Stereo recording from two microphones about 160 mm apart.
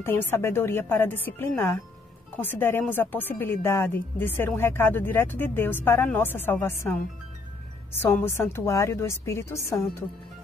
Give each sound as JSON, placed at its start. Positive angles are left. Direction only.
{"t": 0.0, "sound": "speech", "side_deg": 15}
{"t": 8.0, "sound": "speech", "side_deg": 15}